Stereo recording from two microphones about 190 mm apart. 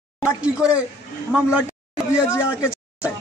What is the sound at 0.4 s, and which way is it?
Speech, 5° right (ahead or behind).